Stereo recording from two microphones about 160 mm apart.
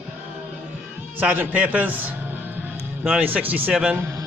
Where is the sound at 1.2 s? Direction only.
10° right (ahead or behind).